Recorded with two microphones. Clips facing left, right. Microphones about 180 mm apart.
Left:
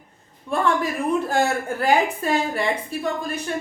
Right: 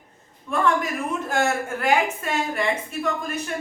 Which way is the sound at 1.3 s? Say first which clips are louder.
Left 2 dB; 35° left (ahead or behind).